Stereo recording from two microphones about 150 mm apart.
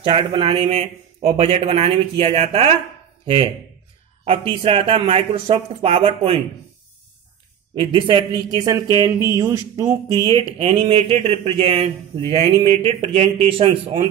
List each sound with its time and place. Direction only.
0.0 s speech: 35° right (ahead or behind)
7.7 s speech: 35° right (ahead or behind)
10.3 s speech: 40° right (ahead or behind)